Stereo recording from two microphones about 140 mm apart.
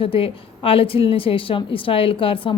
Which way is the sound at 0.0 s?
40° left (ahead or behind).